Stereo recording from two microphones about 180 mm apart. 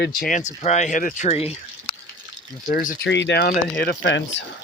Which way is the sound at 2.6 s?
50° left (ahead or behind).